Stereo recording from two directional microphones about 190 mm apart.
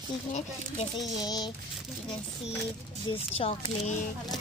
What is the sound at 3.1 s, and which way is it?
Speech, 30° left (ahead or behind).